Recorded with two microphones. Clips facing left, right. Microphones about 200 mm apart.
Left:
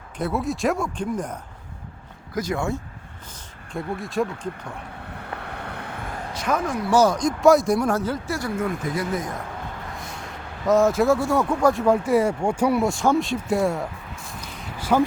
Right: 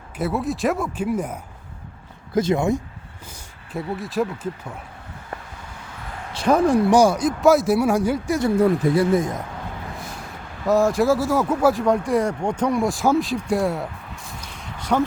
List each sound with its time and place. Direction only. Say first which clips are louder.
0.2 s speech: right 1 dB; centre (ahead or behind)
2.3 s speech: right 6 dB; 25° right (ahead or behind)
3.7 s speech: right 1 dB; 5° right (ahead or behind)
5.1 s vehicle: left 2 dB; 65° left (ahead or behind)
6.3 s speech: right 8 dB; 30° right (ahead or behind)
6.9 s speech: right 2 dB; 10° right (ahead or behind)
8.5 s speech: right 10 dB; 30° right (ahead or behind)
10.7 s speech: even; centre (ahead or behind)